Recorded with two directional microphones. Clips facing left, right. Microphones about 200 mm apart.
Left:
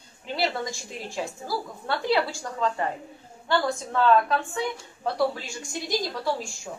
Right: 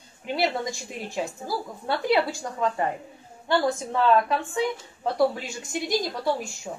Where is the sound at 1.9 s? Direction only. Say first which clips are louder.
Right 2 dB; 20° right (ahead or behind).